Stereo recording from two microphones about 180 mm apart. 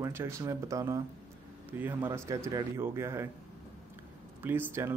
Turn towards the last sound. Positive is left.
turn(degrees=-15)  # may be behind; listen again after turning